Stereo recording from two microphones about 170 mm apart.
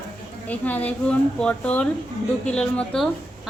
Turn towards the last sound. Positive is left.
turn(degrees=0)  # may be behind; listen again after turning